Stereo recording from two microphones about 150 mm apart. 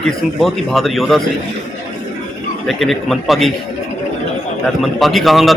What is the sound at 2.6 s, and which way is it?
Speech, centre (ahead or behind).